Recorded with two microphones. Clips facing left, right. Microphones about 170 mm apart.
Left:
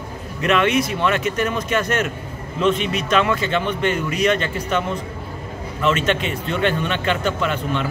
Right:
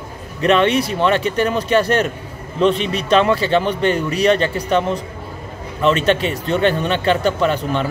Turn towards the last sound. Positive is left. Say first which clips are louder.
# right 4 dB
turn(degrees=-35)  # may be behind; listen again after turning